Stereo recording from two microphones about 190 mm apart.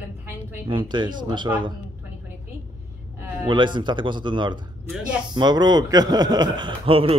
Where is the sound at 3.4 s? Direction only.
25° right (ahead or behind).